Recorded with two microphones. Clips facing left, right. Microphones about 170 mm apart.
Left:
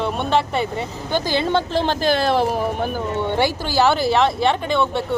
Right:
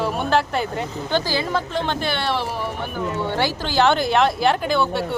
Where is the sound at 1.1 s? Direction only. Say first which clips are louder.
Left 3 dB; 25° left (ahead or behind).